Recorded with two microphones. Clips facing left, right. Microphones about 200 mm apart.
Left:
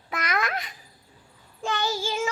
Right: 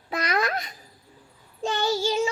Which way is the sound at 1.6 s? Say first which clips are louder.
Right 4 dB; 25° right (ahead or behind).